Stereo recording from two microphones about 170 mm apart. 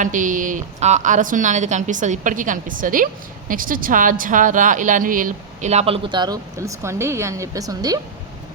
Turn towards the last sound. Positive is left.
turn(degrees=-20)  # may be behind; listen again after turning